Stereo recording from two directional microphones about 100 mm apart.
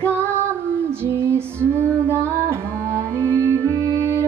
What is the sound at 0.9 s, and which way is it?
Female singing, 25° right (ahead or behind).